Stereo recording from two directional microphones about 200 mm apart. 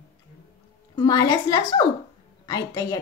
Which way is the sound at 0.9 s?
20° left (ahead or behind).